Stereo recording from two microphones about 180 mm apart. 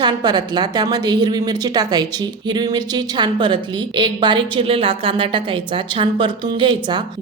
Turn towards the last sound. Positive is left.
turn(degrees=-25)  # may be behind; listen again after turning